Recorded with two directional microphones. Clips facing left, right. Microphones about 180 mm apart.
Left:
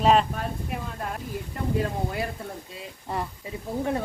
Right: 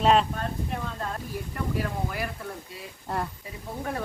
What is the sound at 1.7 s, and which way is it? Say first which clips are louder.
Speech: left 4 dB; 25° left (ahead or behind).